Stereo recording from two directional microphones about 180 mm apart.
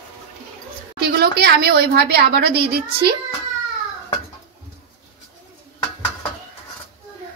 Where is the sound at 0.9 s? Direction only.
60° right (ahead or behind).